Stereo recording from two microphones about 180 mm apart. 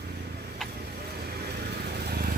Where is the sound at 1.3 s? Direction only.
60° right (ahead or behind).